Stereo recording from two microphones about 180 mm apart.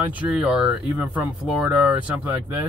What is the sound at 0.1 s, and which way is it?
Speech, 10° right (ahead or behind).